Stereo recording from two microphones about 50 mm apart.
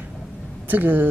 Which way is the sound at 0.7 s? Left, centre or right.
Right.